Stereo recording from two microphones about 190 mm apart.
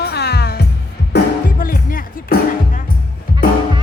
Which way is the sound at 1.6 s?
50° left (ahead or behind).